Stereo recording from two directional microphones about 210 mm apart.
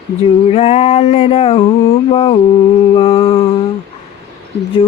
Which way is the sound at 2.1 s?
25° left (ahead or behind).